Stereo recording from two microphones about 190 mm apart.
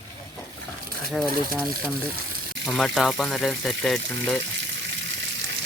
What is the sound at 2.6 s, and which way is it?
Speech, centre (ahead or behind).